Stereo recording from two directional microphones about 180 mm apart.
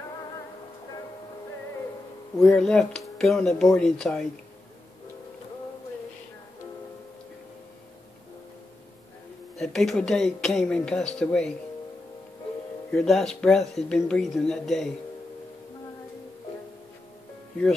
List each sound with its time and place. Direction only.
2.4 s speech: 5° left (ahead or behind)
9.6 s speech: centre (ahead or behind)
12.9 s speech: 5° left (ahead or behind)